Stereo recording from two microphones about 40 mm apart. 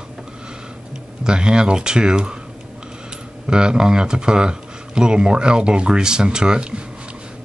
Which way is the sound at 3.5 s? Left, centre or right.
Right.